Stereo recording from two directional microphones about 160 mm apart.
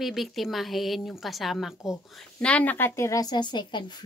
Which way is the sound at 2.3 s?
10° left (ahead or behind).